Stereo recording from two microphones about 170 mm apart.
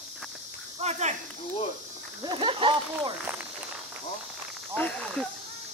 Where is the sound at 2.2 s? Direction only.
30° right (ahead or behind).